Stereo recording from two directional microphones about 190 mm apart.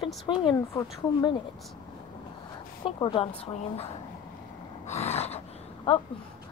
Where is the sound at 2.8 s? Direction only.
25° left (ahead or behind).